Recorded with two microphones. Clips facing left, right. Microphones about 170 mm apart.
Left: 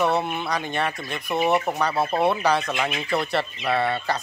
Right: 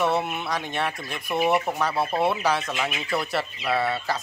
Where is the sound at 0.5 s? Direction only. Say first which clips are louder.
Left 2 dB; centre (ahead or behind).